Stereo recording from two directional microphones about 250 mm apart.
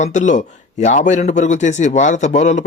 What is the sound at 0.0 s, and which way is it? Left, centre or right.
Speech, left.